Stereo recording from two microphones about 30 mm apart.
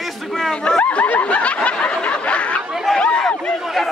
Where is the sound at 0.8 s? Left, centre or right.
Left.